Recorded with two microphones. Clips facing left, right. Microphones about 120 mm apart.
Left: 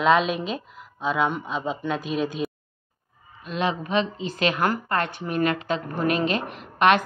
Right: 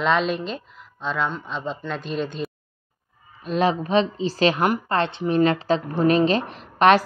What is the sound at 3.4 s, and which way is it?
A woman's voice, 40° right (ahead or behind).